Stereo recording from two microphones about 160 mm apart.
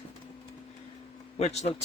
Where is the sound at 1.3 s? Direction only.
45° left (ahead or behind).